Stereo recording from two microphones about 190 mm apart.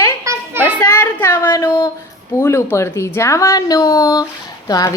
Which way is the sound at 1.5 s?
20° left (ahead or behind).